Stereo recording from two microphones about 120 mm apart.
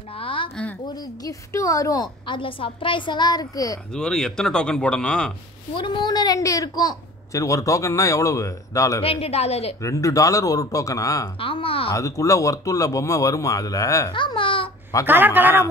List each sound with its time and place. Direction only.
0.1 s a sound: 50° left (ahead or behind)
0.8 s a woman's voice: 35° left (ahead or behind)
2.2 s a woman's voice: 45° left (ahead or behind)
3.9 s speech: 5° left (ahead or behind)
5.8 s a woman's voice: 40° left (ahead or behind)
9.0 s a woman's voice: 55° left (ahead or behind)
9.8 s a woman's voice: 25° left (ahead or behind)
11.3 s speech: 50° left (ahead or behind)
11.9 s a woman's voice: 25° left (ahead or behind)
14.1 s babbling: 45° left (ahead or behind)
15.0 s a man's voice: 15° right (ahead or behind)